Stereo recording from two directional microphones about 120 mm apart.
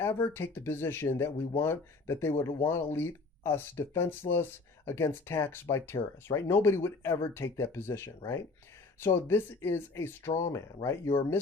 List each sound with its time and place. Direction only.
0.0 s speech: 20° left (ahead or behind)